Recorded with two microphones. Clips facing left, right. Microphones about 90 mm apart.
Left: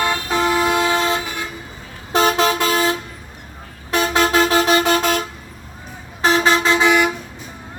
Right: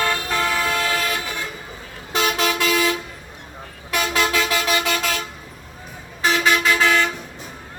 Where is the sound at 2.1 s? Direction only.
35° left (ahead or behind); by 7.1 s 15° left (ahead or behind).